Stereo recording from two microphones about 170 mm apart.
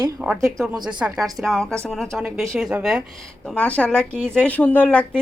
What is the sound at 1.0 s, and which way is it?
A woman's voice, 10° right (ahead or behind).